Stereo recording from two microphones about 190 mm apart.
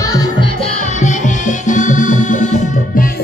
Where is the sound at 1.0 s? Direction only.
40° left (ahead or behind).